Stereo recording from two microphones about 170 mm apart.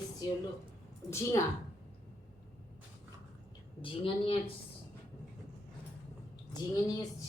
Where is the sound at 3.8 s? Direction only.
30° left (ahead or behind).